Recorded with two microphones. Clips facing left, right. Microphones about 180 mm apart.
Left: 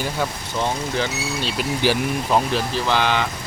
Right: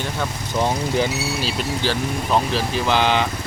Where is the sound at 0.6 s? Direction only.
15° right (ahead or behind).